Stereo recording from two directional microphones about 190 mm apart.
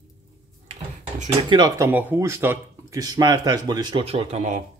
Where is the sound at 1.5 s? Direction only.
20° right (ahead or behind).